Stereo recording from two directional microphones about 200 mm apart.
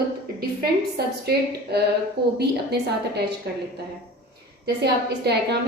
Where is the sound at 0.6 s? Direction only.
50° right (ahead or behind).